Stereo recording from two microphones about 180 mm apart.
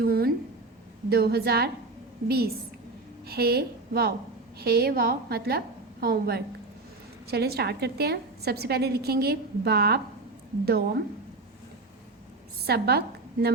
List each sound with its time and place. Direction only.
0.0 s a sound: 60° right (ahead or behind)
1.1 s a woman's voice: 60° right (ahead or behind)
12.6 s a woman's voice: 65° right (ahead or behind)